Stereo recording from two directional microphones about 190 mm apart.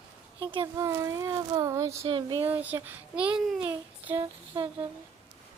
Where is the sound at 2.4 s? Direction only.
10° right (ahead or behind).